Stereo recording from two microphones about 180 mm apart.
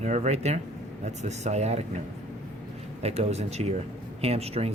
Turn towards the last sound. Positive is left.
turn(degrees=-35)  # may be behind; listen again after turning